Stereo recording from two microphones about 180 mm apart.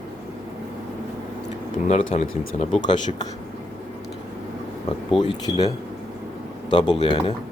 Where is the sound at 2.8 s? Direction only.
25° left (ahead or behind).